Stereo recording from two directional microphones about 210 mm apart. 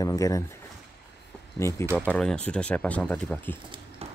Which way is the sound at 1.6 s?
15° left (ahead or behind).